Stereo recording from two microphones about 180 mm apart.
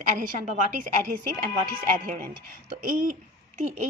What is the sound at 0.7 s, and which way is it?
A woman's voice, 45° right (ahead or behind).